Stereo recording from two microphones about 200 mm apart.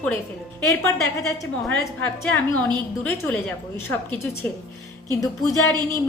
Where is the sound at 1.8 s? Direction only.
10° left (ahead or behind).